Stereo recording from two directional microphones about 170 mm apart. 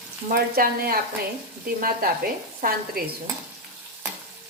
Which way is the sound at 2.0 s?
60° right (ahead or behind).